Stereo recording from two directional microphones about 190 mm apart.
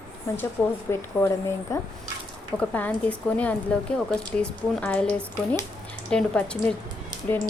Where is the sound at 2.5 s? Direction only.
5° left (ahead or behind).